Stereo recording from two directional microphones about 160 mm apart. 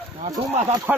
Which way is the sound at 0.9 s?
10° right (ahead or behind).